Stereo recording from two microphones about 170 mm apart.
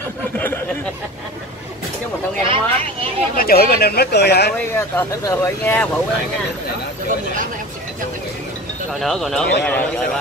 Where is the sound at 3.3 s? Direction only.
60° left (ahead or behind).